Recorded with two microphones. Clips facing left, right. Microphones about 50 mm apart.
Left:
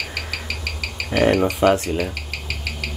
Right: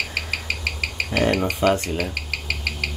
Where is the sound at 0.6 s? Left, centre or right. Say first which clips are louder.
Right 2 dB; right.